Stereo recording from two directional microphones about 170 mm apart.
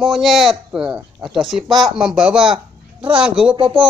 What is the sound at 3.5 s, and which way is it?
Speech, 30° right (ahead or behind).